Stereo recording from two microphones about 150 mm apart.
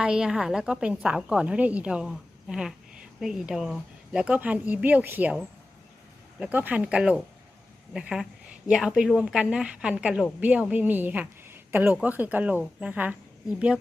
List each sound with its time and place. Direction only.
0.0 s a woman's voice: 5° right (ahead or behind)
6.4 s a woman's voice: 10° right (ahead or behind)